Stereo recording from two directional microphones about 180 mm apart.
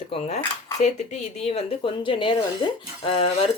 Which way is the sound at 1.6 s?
30° left (ahead or behind).